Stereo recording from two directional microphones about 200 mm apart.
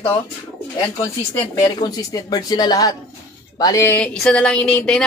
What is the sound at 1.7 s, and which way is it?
Speech, 20° left (ahead or behind).